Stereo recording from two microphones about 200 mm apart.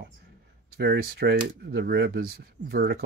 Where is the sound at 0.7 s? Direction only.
55° right (ahead or behind).